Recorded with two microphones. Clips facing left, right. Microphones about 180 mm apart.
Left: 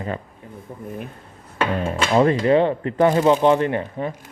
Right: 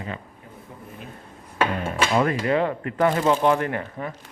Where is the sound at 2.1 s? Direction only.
30° left (ahead or behind).